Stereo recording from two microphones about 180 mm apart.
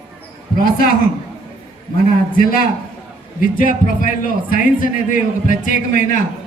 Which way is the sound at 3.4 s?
50° left (ahead or behind).